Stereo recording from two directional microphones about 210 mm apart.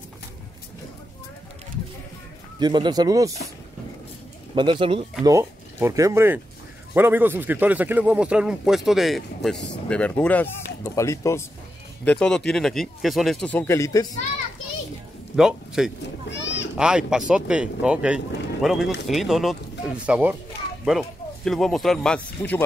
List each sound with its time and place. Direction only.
2.6 s speech: 20° right (ahead or behind)
4.6 s a man's voice: 25° right (ahead or behind); by 14.0 s 15° left (ahead or behind)
15.3 s a man's voice: centre (ahead or behind)
16.3 s a sound: 55° left (ahead or behind)
16.7 s a man's voice: 5° right (ahead or behind)